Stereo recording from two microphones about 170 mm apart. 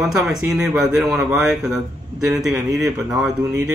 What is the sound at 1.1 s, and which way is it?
Speech, centre (ahead or behind).